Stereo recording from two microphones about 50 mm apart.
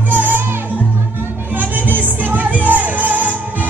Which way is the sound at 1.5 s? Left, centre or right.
Right.